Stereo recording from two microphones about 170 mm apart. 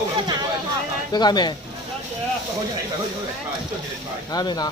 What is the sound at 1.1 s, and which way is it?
Speech, 25° left (ahead or behind).